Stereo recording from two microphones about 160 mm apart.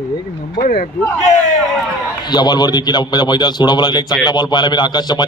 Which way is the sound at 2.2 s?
25° left (ahead or behind).